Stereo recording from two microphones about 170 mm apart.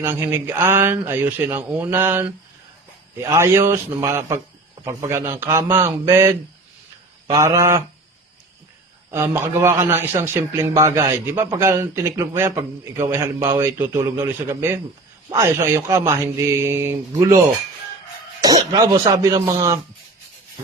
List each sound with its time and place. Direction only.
0.0 s a man's voice: 15° right (ahead or behind)
7.3 s a man's voice: 20° right (ahead or behind)
9.0 s a man's voice: 15° right (ahead or behind)
18.7 s a man's voice: 20° right (ahead or behind)